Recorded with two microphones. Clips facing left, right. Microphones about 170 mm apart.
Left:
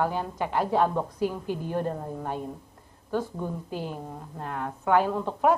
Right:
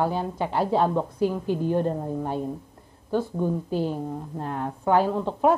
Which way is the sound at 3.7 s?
30° right (ahead or behind).